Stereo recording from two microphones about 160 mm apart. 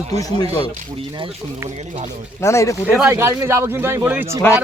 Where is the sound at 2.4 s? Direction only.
15° left (ahead or behind).